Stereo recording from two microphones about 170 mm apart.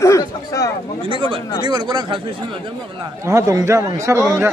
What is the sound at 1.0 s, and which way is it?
Speech, 30° right (ahead or behind).